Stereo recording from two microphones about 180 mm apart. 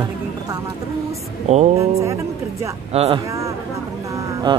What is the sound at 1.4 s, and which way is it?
Speech, 40° right (ahead or behind).